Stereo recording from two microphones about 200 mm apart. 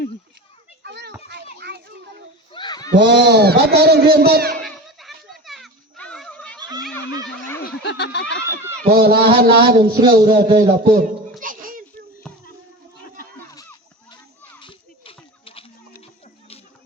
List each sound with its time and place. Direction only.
0.8 s children playing: 55° right (ahead or behind)
2.5 s a sound: 25° left (ahead or behind)
2.9 s speech: 60° right (ahead or behind)
4.6 s children playing: centre (ahead or behind)
7.6 s snicker: 55° left (ahead or behind)
8.8 s speech: 50° right (ahead or behind)
9.7 s speech: 25° right (ahead or behind)
10.1 s speech: 50° right (ahead or behind)
10.6 s a sound: 40° right (ahead or behind)
12.2 s a sound: 5° left (ahead or behind)
13.5 s children playing: 15° left (ahead or behind)
14.6 s a sound: 25° left (ahead or behind)